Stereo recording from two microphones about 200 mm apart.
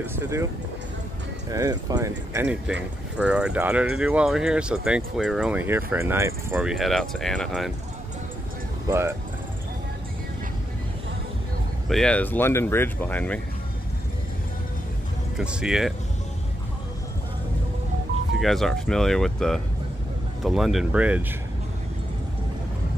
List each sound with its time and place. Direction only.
0.0 s speech: 10° right (ahead or behind)
1.5 s speech: 15° right (ahead or behind); by 7.7 s centre (ahead or behind)
8.8 s speech: 10° right (ahead or behind)
11.9 s speech: 5° left (ahead or behind)
15.3 s speech: 5° right (ahead or behind)
18.4 s speech: centre (ahead or behind)